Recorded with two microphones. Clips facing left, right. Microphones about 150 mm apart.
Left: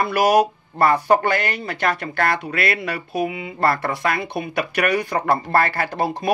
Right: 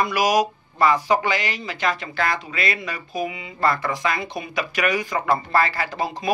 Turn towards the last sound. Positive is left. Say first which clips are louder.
# left 4 dB
turn(degrees=60)  # may be behind; listen again after turning